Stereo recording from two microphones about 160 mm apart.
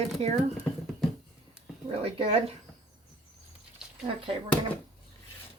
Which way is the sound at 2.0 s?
35° right (ahead or behind).